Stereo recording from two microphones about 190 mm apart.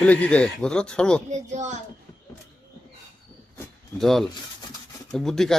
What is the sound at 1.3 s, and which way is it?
Speech, 40° right (ahead or behind).